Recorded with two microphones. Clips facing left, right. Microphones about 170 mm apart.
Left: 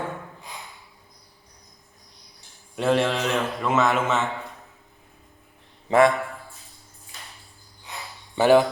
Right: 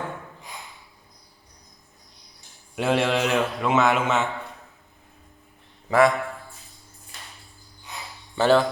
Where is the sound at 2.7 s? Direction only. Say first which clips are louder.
Even; centre (ahead or behind).